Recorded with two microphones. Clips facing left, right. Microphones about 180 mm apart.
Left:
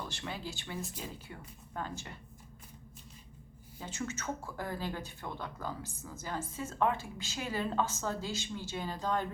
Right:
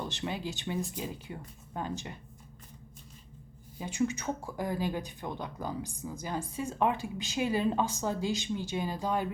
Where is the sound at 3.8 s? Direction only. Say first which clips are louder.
Right 8 dB; 15° right (ahead or behind).